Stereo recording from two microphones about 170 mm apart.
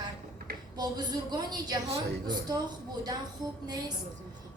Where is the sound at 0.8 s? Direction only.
25° right (ahead or behind).